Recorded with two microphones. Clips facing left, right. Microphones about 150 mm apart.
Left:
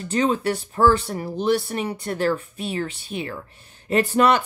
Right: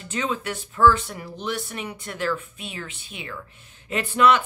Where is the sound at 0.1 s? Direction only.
35° left (ahead or behind).